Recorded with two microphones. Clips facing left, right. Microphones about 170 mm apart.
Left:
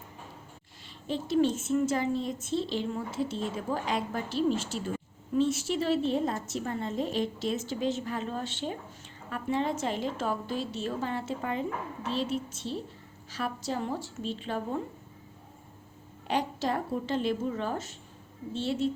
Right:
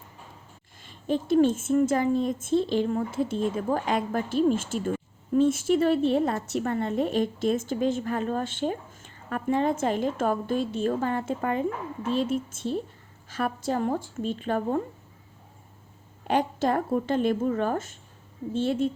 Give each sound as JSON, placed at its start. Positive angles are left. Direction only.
{"t": 0.9, "sound": "a woman's voice", "side_deg": -50}
{"t": 16.2, "sound": "a woman's voice", "side_deg": -50}